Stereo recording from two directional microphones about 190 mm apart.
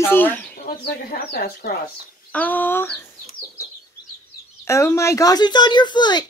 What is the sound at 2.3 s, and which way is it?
Speech, 10° left (ahead or behind).